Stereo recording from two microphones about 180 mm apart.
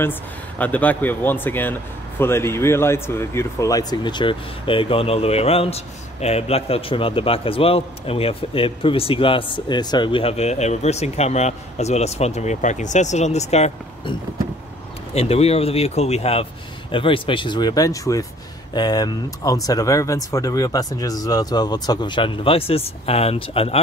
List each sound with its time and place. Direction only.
0.0 s a man's voice: 10° left (ahead or behind); by 14.1 s 35° left (ahead or behind)
15.1 s a man's voice: 35° left (ahead or behind)